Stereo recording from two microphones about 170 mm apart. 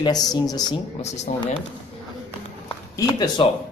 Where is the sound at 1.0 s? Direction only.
40° left (ahead or behind).